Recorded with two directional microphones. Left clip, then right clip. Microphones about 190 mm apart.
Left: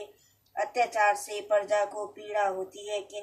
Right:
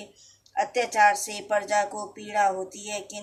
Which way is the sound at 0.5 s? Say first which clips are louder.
Right 3 dB; 40° right (ahead or behind).